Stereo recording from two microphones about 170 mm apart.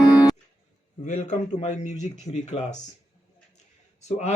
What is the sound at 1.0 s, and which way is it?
A man's voice, 45° left (ahead or behind).